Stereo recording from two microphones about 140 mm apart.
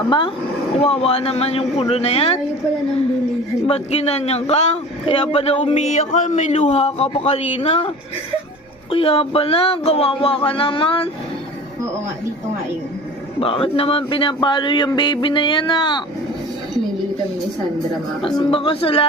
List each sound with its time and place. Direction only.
0.8 s a man's voice: 45° left (ahead or behind)
3.7 s a man's voice: 50° left (ahead or behind)
5.8 s a man's voice: 60° left (ahead or behind); by 11.1 s 40° left (ahead or behind)
13.4 s speech: 40° left (ahead or behind)
18.3 s speech: 40° left (ahead or behind)